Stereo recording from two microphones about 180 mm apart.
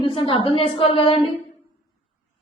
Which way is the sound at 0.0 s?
30° left (ahead or behind).